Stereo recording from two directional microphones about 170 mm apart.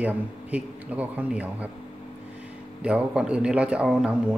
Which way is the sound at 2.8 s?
5° right (ahead or behind).